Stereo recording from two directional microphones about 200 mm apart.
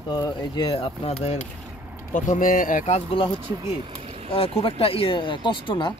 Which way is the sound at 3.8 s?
30° right (ahead or behind).